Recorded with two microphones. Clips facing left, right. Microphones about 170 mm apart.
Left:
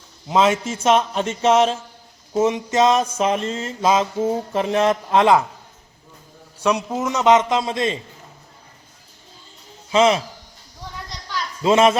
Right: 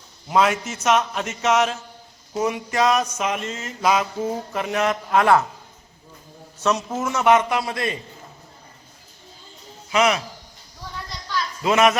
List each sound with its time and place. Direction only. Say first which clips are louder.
0.3 s mantra: left 2 dB; 25° left (ahead or behind)
6.6 s mantra: left 2 dB; 10° left (ahead or behind)
9.9 s mantra: left 4 dB; 25° left (ahead or behind)
11.6 s mantra: left 3 dB; 30° left (ahead or behind)